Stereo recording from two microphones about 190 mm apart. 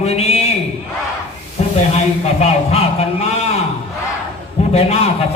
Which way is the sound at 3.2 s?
35° left (ahead or behind).